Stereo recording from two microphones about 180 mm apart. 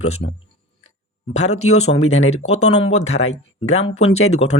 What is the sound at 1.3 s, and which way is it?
Speech, 35° left (ahead or behind).